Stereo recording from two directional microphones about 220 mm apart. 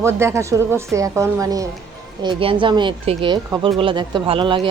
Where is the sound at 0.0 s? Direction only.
10° right (ahead or behind).